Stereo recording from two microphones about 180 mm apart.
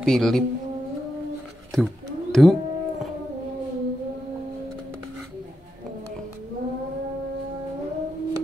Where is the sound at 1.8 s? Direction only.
Centre (ahead or behind).